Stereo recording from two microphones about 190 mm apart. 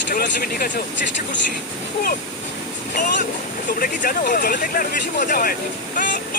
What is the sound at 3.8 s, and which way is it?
Speech, 45° left (ahead or behind).